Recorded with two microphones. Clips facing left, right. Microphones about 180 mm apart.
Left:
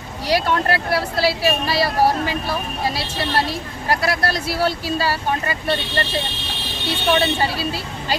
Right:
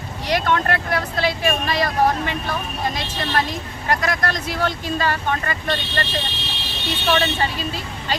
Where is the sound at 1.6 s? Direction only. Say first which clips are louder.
Left 2 dB; 35° left (ahead or behind).